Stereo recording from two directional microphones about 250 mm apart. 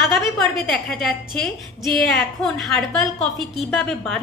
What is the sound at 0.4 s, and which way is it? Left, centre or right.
A woman's voice, centre.